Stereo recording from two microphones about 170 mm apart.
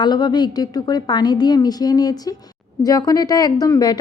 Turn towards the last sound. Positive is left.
turn(degrees=25)  # may be behind; listen again after turning